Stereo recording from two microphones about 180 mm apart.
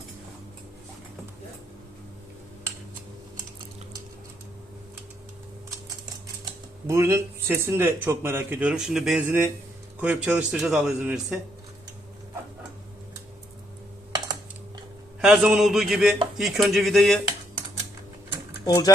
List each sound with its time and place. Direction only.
6.4 s a man's voice: 15° right (ahead or behind)
15.2 s a man's voice: 5° right (ahead or behind)
18.6 s speech: 20° left (ahead or behind)